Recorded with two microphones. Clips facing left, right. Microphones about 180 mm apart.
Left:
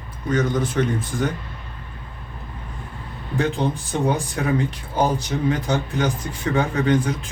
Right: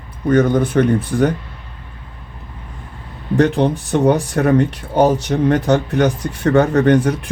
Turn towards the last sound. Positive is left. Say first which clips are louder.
# right 6 dB
turn(degrees=-65)  # may be behind; listen again after turning